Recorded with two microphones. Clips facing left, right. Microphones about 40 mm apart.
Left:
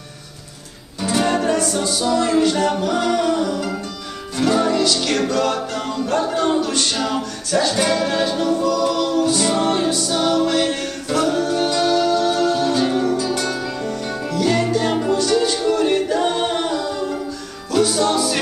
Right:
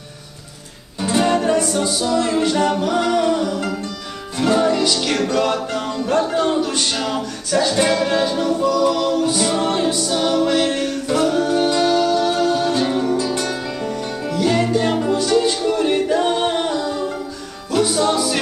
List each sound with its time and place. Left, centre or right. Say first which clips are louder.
1.0 s music: right 1 dB; centre
11.3 s music: right 2 dB; centre
13.3 s music: even; centre
13.8 s music: even; centre
15.1 s a capella: right 1 dB; centre
17.6 s music: even; centre